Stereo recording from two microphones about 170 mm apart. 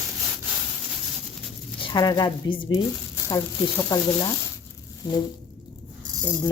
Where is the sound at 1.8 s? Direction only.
25° left (ahead or behind).